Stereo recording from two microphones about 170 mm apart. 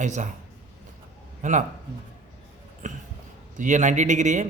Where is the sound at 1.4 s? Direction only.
45° right (ahead or behind).